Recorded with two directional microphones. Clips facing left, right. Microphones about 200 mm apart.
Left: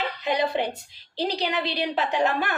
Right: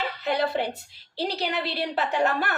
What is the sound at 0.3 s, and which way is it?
Speech, 15° left (ahead or behind).